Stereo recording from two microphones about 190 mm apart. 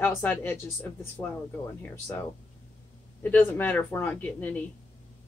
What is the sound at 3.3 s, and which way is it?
Speech, 10° left (ahead or behind).